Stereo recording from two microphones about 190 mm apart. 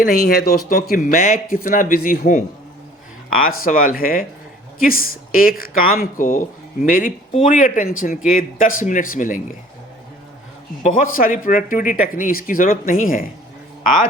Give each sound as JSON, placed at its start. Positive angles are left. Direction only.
{"t": 0.0, "sound": "speech", "side_deg": 55}
{"t": 3.7, "sound": "speech", "side_deg": 50}
{"t": 10.8, "sound": "speech", "side_deg": 45}